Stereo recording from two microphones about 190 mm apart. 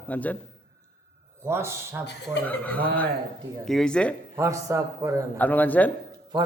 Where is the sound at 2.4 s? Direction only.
10° left (ahead or behind).